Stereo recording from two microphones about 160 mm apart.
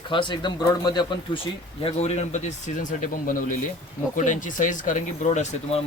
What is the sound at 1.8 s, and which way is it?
Speech, 40° left (ahead or behind).